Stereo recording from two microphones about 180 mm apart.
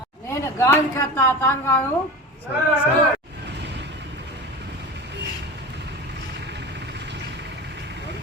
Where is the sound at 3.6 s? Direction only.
70° right (ahead or behind).